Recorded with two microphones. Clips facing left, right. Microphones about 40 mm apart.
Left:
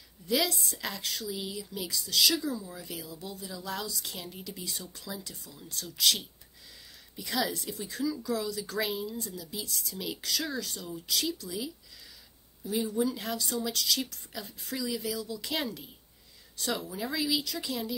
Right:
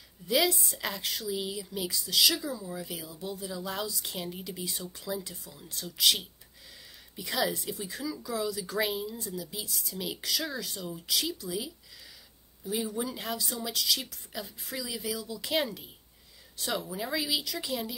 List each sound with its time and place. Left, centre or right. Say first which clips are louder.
0.3 s speech: right 2 dB; centre